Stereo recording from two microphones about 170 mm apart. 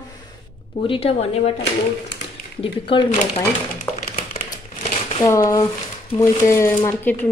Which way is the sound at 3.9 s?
35° left (ahead or behind).